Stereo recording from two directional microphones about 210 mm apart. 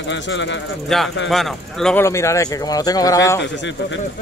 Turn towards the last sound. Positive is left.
turn(degrees=60)  # may be behind; listen again after turning